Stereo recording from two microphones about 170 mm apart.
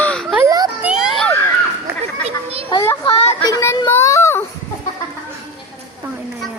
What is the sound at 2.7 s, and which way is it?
Speech, 20° left (ahead or behind).